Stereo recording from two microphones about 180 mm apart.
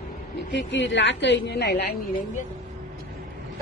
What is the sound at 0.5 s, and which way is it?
A woman's voice, 90° left.